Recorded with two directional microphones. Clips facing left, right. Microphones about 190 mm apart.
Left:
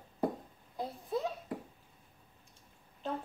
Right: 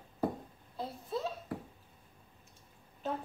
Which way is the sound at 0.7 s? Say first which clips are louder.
Left 2 dB; 15° left (ahead or behind).